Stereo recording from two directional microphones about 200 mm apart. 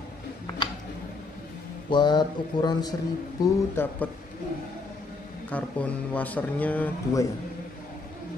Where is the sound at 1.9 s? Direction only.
20° left (ahead or behind).